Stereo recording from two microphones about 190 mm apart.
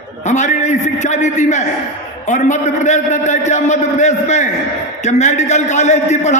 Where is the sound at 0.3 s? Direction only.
40° left (ahead or behind).